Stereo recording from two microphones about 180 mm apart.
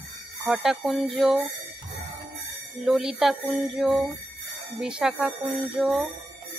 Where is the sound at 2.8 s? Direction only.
Centre (ahead or behind).